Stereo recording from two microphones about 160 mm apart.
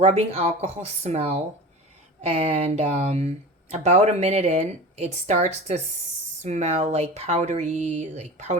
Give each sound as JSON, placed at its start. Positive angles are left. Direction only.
{"t": 0.0, "sound": "speech", "side_deg": -40}